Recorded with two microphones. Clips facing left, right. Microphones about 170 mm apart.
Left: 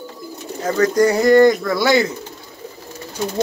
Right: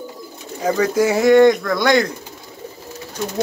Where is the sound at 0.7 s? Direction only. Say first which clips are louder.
Left 1 dB; 10° right (ahead or behind).